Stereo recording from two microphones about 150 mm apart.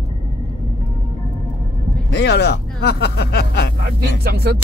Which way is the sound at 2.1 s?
90° left.